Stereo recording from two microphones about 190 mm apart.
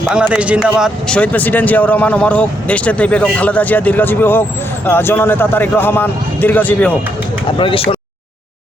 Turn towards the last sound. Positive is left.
turn(degrees=30)  # may be behind; listen again after turning